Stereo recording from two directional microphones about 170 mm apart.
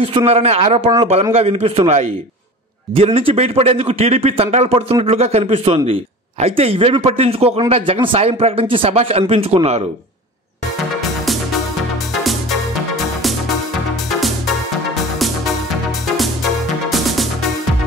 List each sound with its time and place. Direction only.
0.0 s speech: 35° right (ahead or behind)
12.2 s music: centre (ahead or behind)
16.9 s music: centre (ahead or behind)